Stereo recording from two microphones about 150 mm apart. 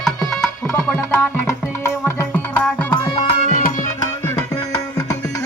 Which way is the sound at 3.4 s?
60° left (ahead or behind).